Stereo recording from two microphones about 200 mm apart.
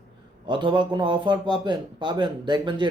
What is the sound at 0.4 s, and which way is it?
Speech, 25° right (ahead or behind).